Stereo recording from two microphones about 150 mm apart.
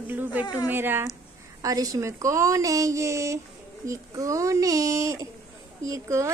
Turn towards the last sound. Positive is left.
turn(degrees=-20)  # may be behind; listen again after turning